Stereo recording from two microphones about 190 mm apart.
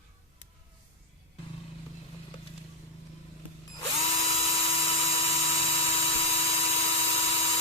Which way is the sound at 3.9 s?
30° left (ahead or behind).